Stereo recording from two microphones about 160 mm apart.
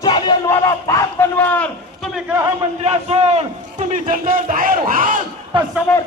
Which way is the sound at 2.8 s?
40° right (ahead or behind).